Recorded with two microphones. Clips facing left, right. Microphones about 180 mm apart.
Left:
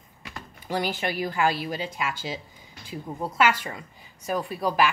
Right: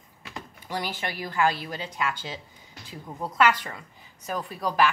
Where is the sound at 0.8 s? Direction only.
15° left (ahead or behind).